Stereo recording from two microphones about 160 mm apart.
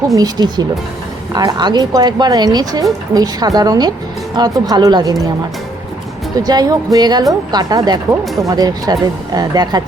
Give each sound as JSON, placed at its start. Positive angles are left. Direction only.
{"t": 0.2, "sound": "speech", "side_deg": -25}
{"t": 6.3, "sound": "speech", "side_deg": -25}